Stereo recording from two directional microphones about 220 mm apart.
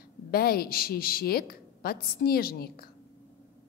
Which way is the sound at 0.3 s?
45° left (ahead or behind).